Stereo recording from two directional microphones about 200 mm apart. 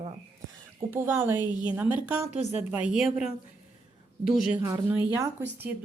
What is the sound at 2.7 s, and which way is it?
A woman's voice, 5° right (ahead or behind).